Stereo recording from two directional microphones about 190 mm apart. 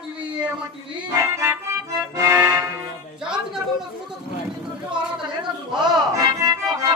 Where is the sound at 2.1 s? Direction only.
15° right (ahead or behind).